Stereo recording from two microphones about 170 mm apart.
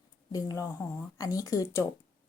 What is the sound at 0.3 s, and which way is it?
Speech, 20° left (ahead or behind).